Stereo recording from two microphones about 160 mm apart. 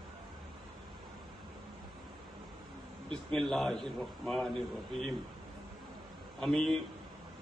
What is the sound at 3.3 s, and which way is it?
A man's voice, 5° left (ahead or behind).